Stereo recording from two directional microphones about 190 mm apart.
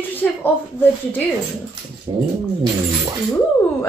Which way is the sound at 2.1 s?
25° right (ahead or behind).